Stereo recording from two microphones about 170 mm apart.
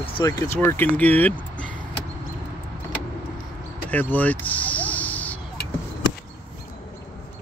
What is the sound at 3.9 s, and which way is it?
Vehicle, 10° left (ahead or behind).